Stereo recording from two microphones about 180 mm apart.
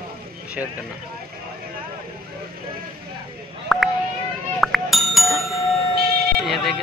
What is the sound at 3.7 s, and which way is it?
Vehicle, centre (ahead or behind).